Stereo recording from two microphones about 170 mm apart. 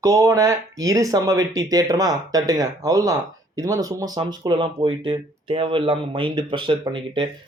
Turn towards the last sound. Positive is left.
turn(degrees=-30)  # may be behind; listen again after turning